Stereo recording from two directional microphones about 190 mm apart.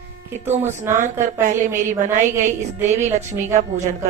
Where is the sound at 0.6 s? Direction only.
15° right (ahead or behind).